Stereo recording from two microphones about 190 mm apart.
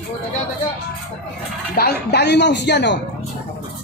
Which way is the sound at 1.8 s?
60° left (ahead or behind).